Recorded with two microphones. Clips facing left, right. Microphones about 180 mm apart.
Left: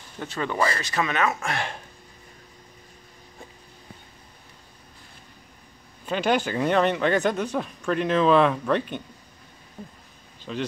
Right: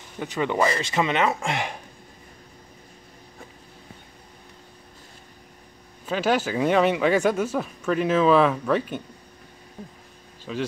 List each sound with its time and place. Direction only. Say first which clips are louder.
0.2 s speech: right 3 dB; 15° right (ahead or behind)
6.0 s speech: even; 5° right (ahead or behind)
10.5 s speech: right 1 dB; 5° right (ahead or behind)